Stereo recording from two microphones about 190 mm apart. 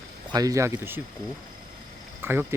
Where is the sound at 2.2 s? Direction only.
10° right (ahead or behind).